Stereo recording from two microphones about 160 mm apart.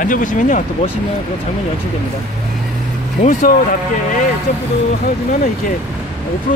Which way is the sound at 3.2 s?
55° left (ahead or behind).